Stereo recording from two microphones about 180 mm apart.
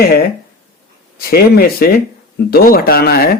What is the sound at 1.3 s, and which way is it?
A man's voice, 60° left (ahead or behind).